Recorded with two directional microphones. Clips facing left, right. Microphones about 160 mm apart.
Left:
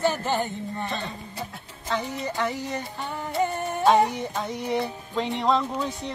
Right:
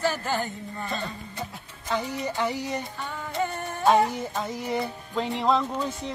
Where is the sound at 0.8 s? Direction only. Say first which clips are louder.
Right 3 dB; centre (ahead or behind).